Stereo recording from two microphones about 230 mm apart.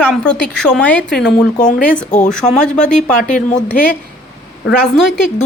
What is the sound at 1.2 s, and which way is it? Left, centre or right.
Speech, left.